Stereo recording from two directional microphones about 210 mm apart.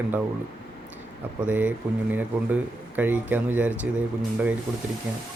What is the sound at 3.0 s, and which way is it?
Speech, 10° right (ahead or behind).